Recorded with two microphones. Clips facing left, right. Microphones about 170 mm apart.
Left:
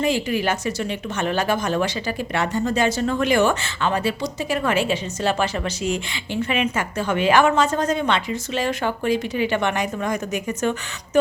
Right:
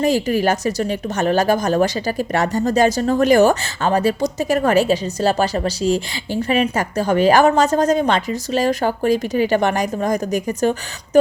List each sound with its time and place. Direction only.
0.0 s speech: 40° right (ahead or behind)